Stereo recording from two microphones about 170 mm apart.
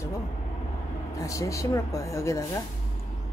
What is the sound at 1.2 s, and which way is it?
Speech, 20° left (ahead or behind).